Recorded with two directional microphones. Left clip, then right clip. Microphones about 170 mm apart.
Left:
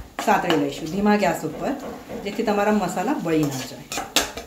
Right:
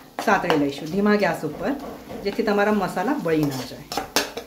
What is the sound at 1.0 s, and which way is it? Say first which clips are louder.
Speech: even; 25° right (ahead or behind).